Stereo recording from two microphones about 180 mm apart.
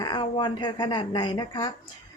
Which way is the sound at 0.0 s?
25° left (ahead or behind).